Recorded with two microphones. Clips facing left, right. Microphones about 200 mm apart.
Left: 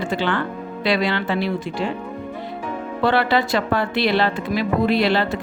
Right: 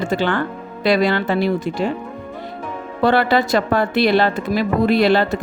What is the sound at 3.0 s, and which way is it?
Speech, 45° right (ahead or behind).